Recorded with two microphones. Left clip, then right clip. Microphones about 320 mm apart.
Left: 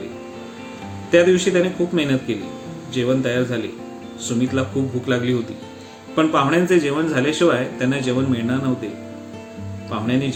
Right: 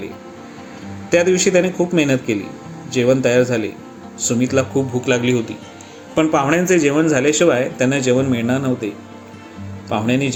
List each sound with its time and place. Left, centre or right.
1.1 s speech: centre
9.9 s speech: centre